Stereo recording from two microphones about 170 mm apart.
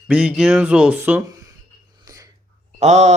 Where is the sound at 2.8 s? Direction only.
40° right (ahead or behind).